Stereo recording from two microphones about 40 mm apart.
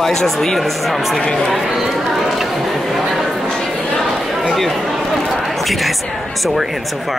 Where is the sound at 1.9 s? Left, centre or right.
Centre.